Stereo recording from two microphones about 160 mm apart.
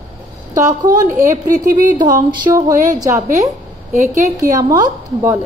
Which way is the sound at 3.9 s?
50° right (ahead or behind).